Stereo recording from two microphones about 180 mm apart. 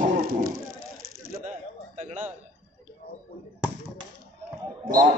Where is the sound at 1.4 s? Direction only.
40° right (ahead or behind).